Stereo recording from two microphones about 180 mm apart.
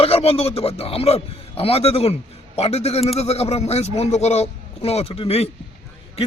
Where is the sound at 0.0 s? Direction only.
35° left (ahead or behind).